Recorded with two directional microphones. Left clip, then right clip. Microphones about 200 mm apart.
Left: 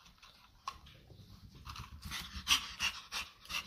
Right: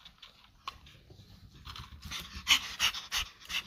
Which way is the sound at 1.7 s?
Centre (ahead or behind).